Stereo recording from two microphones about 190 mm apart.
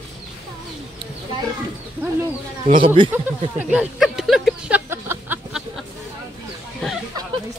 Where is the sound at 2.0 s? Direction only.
10° right (ahead or behind).